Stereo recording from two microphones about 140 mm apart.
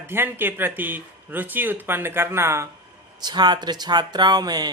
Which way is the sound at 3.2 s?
30° right (ahead or behind).